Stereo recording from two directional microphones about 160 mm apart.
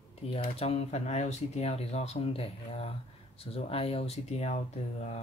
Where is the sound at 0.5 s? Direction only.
40° left (ahead or behind).